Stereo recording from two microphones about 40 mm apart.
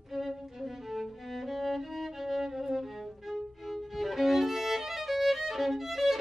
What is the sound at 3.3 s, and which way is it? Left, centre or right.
Violin, centre.